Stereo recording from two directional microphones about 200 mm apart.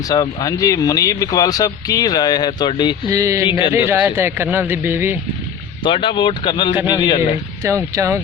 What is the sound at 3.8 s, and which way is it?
Speech, 10° right (ahead or behind).